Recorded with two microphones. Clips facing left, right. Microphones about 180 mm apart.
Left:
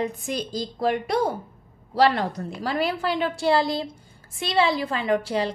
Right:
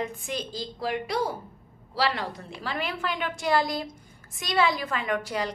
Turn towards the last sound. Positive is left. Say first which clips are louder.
# left 5 dB
turn(degrees=30)  # may be behind; listen again after turning